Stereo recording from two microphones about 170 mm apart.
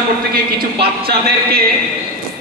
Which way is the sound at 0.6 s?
65° right (ahead or behind).